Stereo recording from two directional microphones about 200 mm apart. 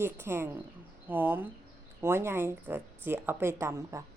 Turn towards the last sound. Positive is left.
turn(degrees=-15)  # may be behind; listen again after turning